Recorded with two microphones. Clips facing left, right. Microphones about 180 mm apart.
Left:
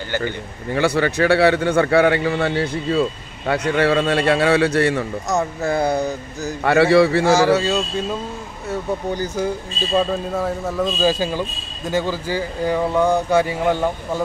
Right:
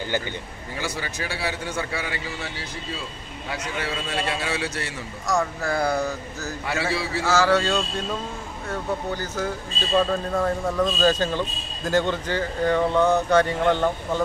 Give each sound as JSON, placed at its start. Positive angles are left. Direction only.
{"t": 0.2, "sound": "a man's voice", "side_deg": 60}
{"t": 5.3, "sound": "speech", "side_deg": 25}
{"t": 6.6, "sound": "a man's voice", "side_deg": 65}
{"t": 7.3, "sound": "a man's voice", "side_deg": 10}